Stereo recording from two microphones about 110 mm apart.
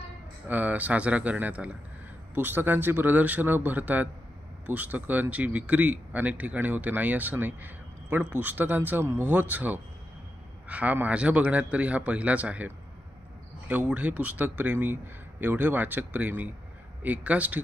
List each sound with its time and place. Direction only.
0.5 s speech: 15° right (ahead or behind)